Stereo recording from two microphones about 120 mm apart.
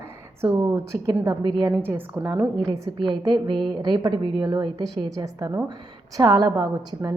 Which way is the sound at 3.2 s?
40° right (ahead or behind).